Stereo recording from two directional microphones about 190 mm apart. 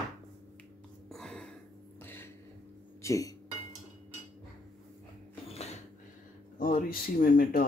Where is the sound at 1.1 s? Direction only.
5° left (ahead or behind).